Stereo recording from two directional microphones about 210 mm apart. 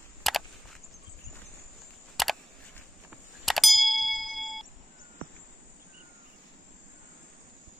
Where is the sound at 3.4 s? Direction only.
Centre (ahead or behind).